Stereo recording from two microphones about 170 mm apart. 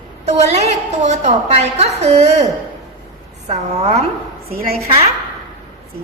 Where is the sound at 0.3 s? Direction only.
40° right (ahead or behind).